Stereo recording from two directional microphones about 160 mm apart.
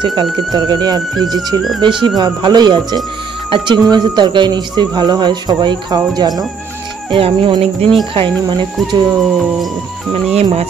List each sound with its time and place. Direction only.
0.0 s speech: 30° right (ahead or behind)
9.2 s music: centre (ahead or behind)
10.3 s speech: 40° right (ahead or behind)